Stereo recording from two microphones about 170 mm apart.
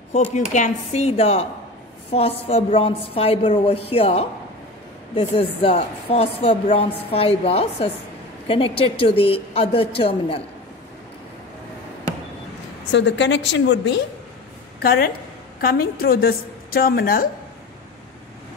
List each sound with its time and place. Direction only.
0.1 s a woman's voice: 40° left (ahead or behind)
12.9 s a woman's voice: 90° left
14.8 s a woman's voice: 65° left (ahead or behind)